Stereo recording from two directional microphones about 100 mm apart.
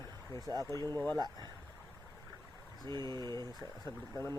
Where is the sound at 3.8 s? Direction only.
25° left (ahead or behind).